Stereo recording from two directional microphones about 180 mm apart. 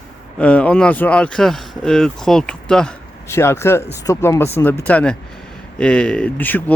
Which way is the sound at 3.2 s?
15° left (ahead or behind).